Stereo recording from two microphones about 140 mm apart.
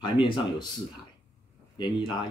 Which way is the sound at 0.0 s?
35° left (ahead or behind).